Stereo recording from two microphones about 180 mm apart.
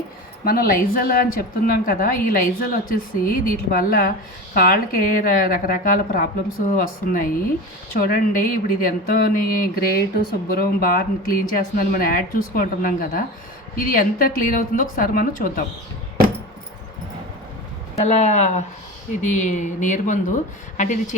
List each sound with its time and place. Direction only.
0.4 s a woman's voice: 55° left (ahead or behind)
17.9 s a woman's voice: 35° left (ahead or behind)